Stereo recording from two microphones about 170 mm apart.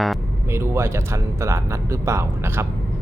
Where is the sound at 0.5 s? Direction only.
15° right (ahead or behind).